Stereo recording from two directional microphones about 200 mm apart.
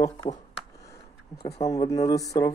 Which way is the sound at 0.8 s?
15° left (ahead or behind).